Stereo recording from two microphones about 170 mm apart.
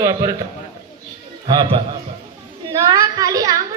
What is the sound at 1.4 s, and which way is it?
A man's voice, 25° right (ahead or behind).